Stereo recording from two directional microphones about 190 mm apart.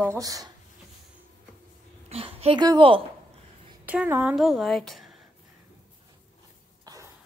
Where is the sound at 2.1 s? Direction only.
30° right (ahead or behind).